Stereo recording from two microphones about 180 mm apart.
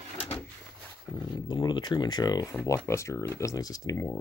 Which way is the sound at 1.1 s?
25° left (ahead or behind).